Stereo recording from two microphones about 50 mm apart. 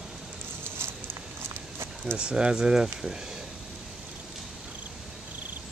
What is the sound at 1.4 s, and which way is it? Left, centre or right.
Horse, right.